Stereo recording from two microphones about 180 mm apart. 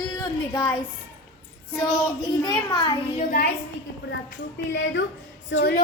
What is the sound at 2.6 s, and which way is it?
Speech, 25° left (ahead or behind).